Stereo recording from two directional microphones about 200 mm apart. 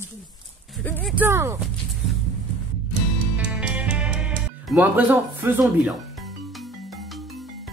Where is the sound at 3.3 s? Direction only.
5° right (ahead or behind).